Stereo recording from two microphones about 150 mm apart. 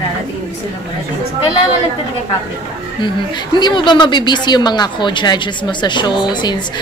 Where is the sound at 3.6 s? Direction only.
30° left (ahead or behind).